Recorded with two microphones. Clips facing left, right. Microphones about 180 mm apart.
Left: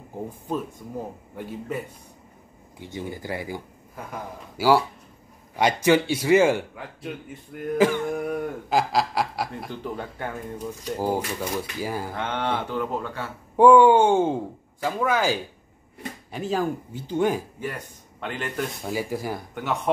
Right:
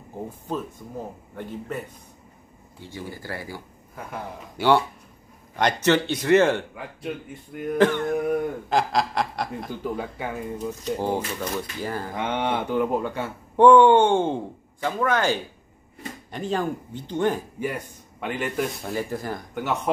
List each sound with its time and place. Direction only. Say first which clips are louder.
1.3 s a man's voice: left 1 dB; 10° left (ahead or behind)
2.8 s a man's voice: left 3 dB; 20° left (ahead or behind)
3.9 s a man's voice: right 1 dB; 5° left (ahead or behind)
10.1 s speech: right 2 dB; 5° right (ahead or behind)
11.3 s a man's voice: left 1 dB; 10° left (ahead or behind)
12.1 s speech: right 2 dB; 15° right (ahead or behind)
13.6 s a man's voice: even; 5° left (ahead or behind)
17.6 s speech: right 4 dB; 10° right (ahead or behind)
18.8 s a man's voice: left 1 dB; 5° left (ahead or behind)